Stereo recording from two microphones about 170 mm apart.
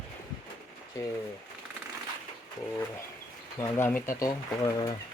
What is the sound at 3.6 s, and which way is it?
Speech, 15° left (ahead or behind).